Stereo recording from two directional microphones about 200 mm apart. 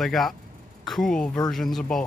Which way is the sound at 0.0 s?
Centre (ahead or behind).